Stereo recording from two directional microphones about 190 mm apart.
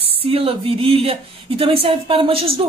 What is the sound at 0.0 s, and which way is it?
Speech, 30° right (ahead or behind).